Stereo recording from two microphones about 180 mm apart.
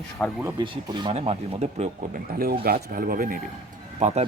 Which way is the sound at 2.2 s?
55° right (ahead or behind).